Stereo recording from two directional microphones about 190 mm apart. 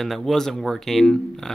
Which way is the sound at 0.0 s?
Centre (ahead or behind).